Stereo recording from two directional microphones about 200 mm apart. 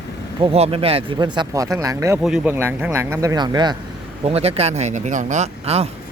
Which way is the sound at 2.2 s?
5° right (ahead or behind).